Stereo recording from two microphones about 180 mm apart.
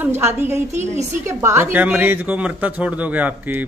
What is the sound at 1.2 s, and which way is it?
Speech, 15° right (ahead or behind).